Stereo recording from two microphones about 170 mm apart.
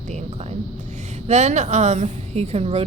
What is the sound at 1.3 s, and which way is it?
A woman's voice, 40° right (ahead or behind).